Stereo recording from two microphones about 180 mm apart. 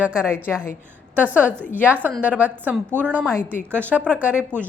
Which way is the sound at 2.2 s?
10° right (ahead or behind).